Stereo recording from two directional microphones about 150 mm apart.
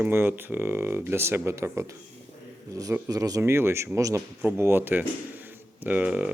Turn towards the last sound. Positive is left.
turn(degrees=-10)  # may be behind; listen again after turning